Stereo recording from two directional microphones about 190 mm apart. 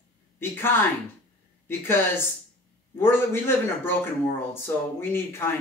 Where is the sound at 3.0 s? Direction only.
10° left (ahead or behind).